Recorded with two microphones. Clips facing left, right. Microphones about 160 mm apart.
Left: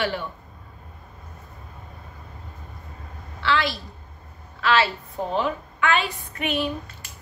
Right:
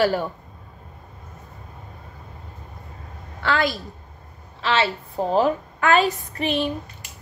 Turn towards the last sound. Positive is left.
turn(degrees=-25)  # may be behind; listen again after turning